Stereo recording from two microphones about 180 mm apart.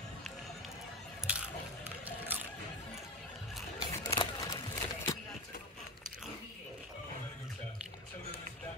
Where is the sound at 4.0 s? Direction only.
20° left (ahead or behind).